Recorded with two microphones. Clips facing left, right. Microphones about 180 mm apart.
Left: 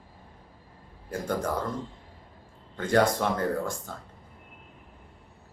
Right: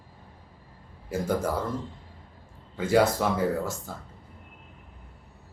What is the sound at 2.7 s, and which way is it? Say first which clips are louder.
A man's voice: right 1 dB; 5° right (ahead or behind).